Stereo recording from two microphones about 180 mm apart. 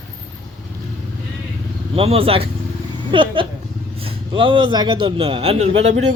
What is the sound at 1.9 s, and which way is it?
A man's voice, 30° right (ahead or behind).